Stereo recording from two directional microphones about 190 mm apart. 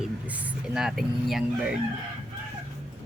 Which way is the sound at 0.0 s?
5° right (ahead or behind).